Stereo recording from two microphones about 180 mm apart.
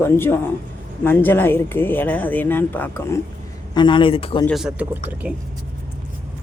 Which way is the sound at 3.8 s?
25° left (ahead or behind).